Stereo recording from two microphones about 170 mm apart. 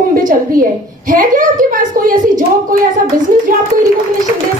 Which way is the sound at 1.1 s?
50° right (ahead or behind).